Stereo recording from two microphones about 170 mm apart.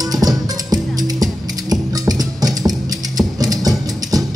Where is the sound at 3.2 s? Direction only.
20° right (ahead or behind).